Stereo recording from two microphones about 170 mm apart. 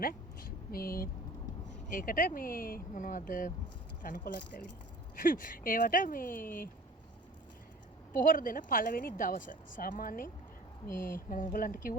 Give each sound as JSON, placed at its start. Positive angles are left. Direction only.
{"t": 0.0, "sound": "a woman's voice", "side_deg": 60}
{"t": 8.1, "sound": "a woman's voice", "side_deg": 55}